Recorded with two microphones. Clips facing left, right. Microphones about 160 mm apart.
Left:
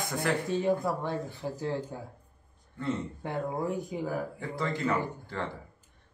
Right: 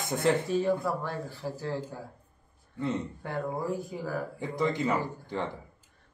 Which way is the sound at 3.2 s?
20° left (ahead or behind).